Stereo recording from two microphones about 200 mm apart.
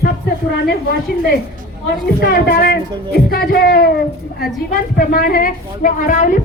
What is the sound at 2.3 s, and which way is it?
Speech, 50° left (ahead or behind).